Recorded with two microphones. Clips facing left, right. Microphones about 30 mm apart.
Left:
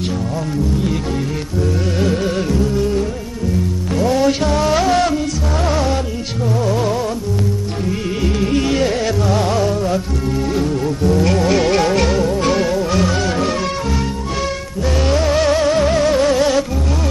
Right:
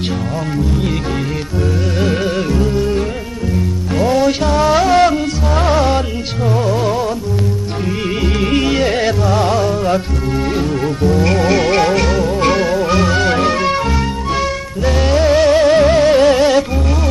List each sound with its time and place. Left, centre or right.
2.0 s music: centre
4.1 s music: centre
5.0 s music: right
6.7 s music: centre
8.6 s music: centre
10.5 s music: centre
11.4 s music: centre
12.3 s music: right
14.9 s music: centre
15.7 s music: right
16.3 s music: centre